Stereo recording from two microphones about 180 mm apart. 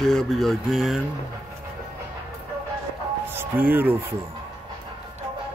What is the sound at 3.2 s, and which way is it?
Speech, 10° right (ahead or behind).